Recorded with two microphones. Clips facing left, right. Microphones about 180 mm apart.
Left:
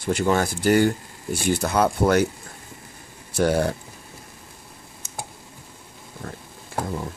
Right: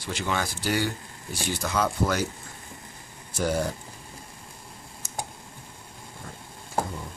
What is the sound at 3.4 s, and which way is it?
Speech, 65° left (ahead or behind).